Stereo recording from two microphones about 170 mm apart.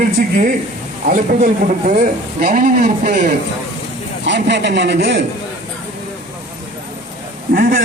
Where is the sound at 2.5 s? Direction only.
50° right (ahead or behind).